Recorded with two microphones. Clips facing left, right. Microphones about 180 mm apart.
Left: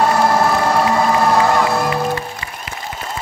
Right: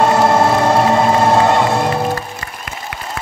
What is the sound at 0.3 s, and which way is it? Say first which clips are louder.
Music: right 3 dB; 25° right (ahead or behind).